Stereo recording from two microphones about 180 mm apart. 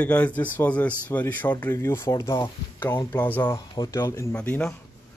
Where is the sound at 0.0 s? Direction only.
10° left (ahead or behind).